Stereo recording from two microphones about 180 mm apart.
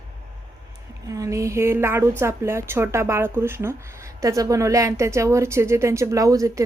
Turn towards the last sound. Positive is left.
turn(degrees=-20)  # may be behind; listen again after turning